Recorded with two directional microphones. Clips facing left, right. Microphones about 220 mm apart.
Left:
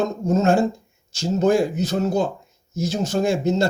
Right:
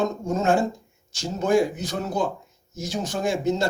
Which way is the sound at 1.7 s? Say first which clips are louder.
Left 6 dB; 25° left (ahead or behind).